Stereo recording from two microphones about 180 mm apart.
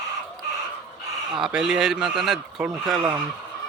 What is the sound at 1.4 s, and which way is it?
Speech, centre (ahead or behind).